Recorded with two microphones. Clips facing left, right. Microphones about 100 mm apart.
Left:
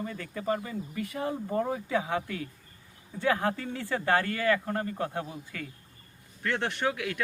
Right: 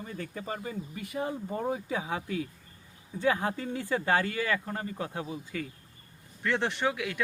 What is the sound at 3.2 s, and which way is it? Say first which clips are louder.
Speech: left 1 dB; 25° right (ahead or behind).